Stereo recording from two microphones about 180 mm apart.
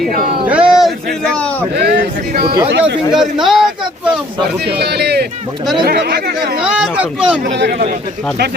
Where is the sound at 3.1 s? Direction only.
Centre (ahead or behind).